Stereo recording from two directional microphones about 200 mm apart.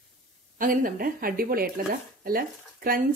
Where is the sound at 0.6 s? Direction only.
45° right (ahead or behind).